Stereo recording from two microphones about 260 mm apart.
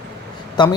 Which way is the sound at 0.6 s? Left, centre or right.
Centre.